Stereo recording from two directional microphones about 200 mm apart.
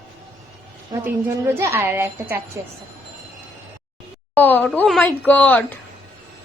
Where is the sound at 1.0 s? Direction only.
10° right (ahead or behind).